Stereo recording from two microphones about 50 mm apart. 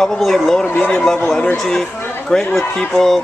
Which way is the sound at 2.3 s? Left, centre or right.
Centre.